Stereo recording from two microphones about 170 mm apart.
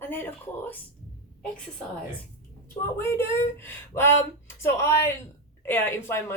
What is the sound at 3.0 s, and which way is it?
Speech, 15° left (ahead or behind).